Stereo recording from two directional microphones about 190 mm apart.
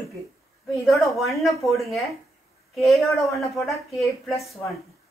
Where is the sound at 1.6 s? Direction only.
Centre (ahead or behind).